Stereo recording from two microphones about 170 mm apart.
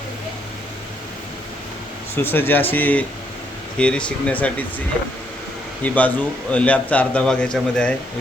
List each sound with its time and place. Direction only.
2.1 s a man's voice: 10° left (ahead or behind)
5.8 s a man's voice: 10° left (ahead or behind)